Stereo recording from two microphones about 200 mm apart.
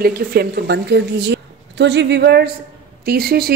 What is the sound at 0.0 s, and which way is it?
A woman's voice, 50° right (ahead or behind).